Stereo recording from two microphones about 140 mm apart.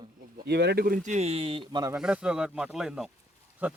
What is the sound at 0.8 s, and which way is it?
Speech, 75° right (ahead or behind).